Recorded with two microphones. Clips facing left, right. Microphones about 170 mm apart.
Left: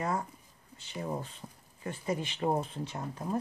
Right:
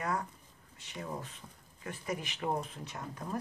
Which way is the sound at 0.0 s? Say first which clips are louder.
Left 2 dB; 25° left (ahead or behind).